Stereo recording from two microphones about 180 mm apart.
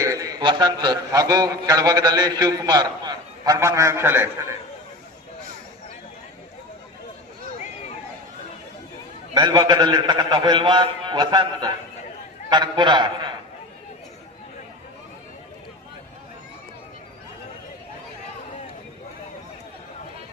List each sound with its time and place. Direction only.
0.0 s a man's voice: 20° right (ahead or behind)
7.4 s a sound: 40° left (ahead or behind)
9.3 s a man's voice: 20° right (ahead or behind)